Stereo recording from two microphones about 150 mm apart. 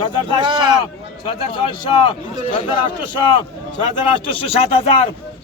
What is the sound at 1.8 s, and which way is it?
Speech, 30° left (ahead or behind).